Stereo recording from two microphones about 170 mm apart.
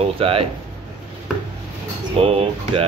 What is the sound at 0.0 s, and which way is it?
Speech, 35° right (ahead or behind).